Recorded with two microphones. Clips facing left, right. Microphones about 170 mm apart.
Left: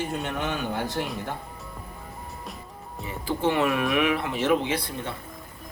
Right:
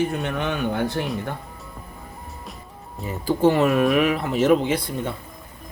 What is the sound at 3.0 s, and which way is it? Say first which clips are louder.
Speech: right 7 dB; 40° right (ahead or behind).